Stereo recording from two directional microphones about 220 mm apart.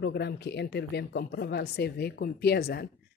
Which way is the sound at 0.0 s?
50° left (ahead or behind).